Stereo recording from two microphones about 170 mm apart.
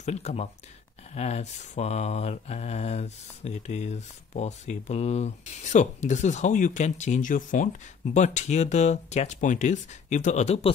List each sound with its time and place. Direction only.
0.0 s speech: 40° left (ahead or behind)
1.1 s mantra: 40° left (ahead or behind)